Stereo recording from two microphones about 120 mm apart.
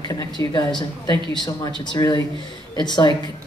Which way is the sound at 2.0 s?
30° left (ahead or behind).